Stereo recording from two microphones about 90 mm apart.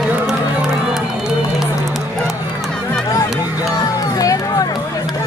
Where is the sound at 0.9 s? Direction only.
5° right (ahead or behind).